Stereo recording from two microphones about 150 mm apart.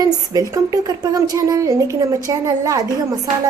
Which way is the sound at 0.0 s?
25° right (ahead or behind).